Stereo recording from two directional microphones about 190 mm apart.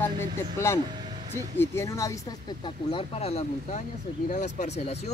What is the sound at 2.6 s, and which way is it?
Speech, 25° left (ahead or behind).